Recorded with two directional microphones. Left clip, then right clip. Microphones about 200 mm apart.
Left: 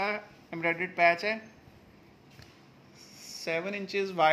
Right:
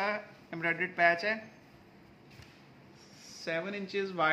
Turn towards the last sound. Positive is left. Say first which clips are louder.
# left 5 dB
turn(degrees=30)  # may be behind; listen again after turning